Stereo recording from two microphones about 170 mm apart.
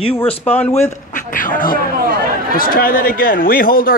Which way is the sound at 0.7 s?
45° left (ahead or behind).